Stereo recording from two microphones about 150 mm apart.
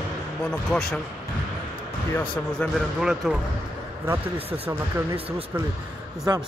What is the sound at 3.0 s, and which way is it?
Speech, 5° right (ahead or behind).